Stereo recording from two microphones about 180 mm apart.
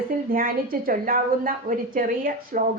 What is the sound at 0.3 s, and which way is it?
A woman's voice, 55° right (ahead or behind).